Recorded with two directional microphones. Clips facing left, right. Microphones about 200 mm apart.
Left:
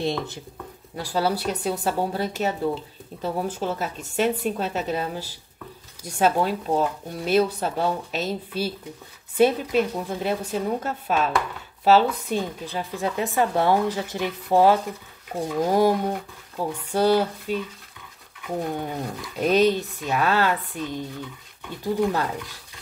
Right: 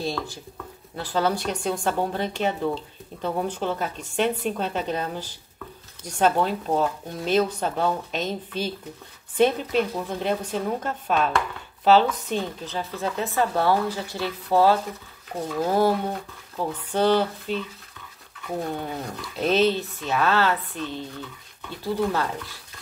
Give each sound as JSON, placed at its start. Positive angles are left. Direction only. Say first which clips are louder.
{"t": 0.0, "sound": "speech", "louder": "left 3 dB", "side_deg": 20}
{"t": 0.9, "sound": "a woman's voice", "louder": "even", "side_deg": 10}
{"t": 9.8, "sound": "a woman's voice", "louder": "left 1 dB", "side_deg": 5}